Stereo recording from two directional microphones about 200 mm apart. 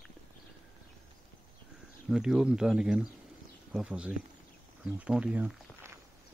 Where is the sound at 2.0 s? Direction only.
Centre (ahead or behind).